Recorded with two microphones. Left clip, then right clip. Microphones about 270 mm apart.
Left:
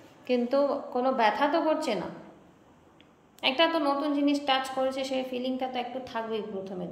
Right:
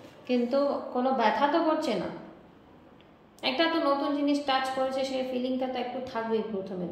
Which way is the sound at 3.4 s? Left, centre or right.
Centre.